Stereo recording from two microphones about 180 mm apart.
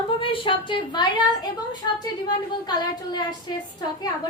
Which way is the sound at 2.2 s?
25° left (ahead or behind).